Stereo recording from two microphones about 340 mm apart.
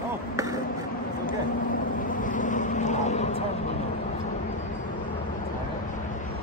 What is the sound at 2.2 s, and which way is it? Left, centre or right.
Vehicle, left.